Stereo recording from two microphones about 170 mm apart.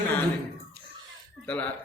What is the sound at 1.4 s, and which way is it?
Speech, 10° left (ahead or behind).